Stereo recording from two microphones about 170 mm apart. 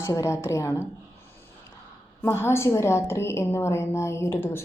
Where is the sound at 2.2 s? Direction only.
15° left (ahead or behind).